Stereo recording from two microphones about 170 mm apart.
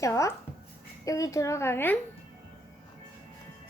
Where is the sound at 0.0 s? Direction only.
15° left (ahead or behind).